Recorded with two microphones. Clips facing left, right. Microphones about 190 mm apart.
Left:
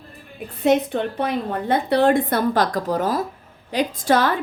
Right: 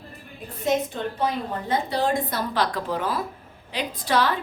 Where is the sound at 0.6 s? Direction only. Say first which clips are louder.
Left 6 dB; 65° left (ahead or behind).